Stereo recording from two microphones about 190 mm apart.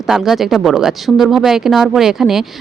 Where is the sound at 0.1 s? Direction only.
Centre (ahead or behind).